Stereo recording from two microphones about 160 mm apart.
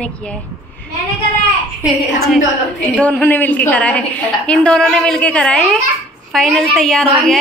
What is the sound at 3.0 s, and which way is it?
A woman's voice, 10° left (ahead or behind).